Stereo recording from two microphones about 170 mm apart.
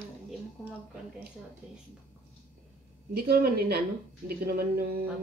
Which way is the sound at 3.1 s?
65° right (ahead or behind).